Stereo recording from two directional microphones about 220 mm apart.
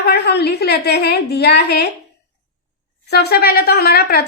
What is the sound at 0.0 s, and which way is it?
A woman's voice, 50° left (ahead or behind).